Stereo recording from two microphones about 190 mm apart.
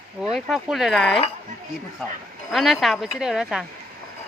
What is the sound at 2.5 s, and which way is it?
Speech, centre (ahead or behind).